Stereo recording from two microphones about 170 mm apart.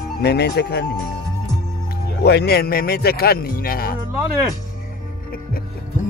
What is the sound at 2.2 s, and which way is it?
Speech, 70° left (ahead or behind).